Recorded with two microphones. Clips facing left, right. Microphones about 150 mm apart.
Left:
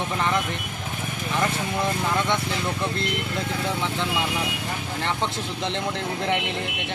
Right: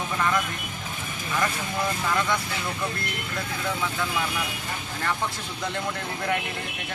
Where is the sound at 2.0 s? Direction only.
25° left (ahead or behind).